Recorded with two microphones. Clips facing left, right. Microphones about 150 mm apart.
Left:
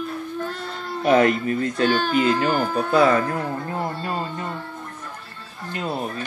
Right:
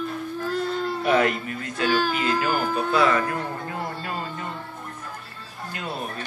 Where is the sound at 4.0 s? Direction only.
35° left (ahead or behind).